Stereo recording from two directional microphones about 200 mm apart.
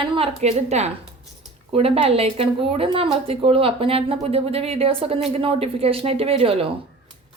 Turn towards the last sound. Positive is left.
turn(degrees=-30)  # may be behind; listen again after turning